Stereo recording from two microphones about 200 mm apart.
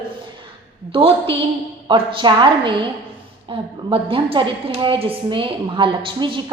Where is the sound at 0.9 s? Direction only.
30° right (ahead or behind).